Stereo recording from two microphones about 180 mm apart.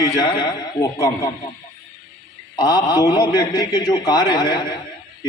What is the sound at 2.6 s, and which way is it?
A man's voice, 20° left (ahead or behind).